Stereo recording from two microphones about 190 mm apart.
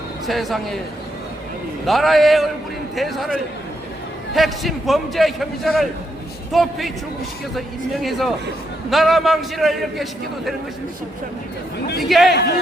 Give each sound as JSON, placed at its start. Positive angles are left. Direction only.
{"t": 0.3, "sound": "a man's voice", "side_deg": 0}
{"t": 1.9, "sound": "a man's voice", "side_deg": 0}
{"t": 8.9, "sound": "a man's voice", "side_deg": 0}
{"t": 12.0, "sound": "a man's voice", "side_deg": 0}
{"t": 12.3, "sound": "speech", "side_deg": 60}